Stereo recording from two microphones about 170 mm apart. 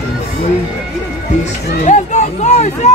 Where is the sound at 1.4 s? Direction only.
45° left (ahead or behind).